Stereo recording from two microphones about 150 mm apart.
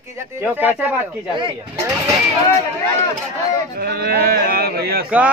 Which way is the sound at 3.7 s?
90° right.